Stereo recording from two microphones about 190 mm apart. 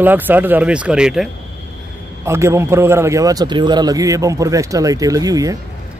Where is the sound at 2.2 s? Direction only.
15° right (ahead or behind).